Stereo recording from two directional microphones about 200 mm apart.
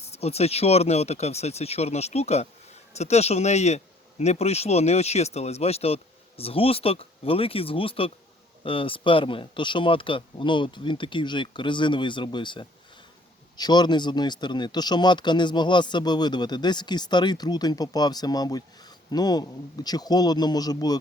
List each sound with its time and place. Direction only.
0.0 s speech: 30° left (ahead or behind)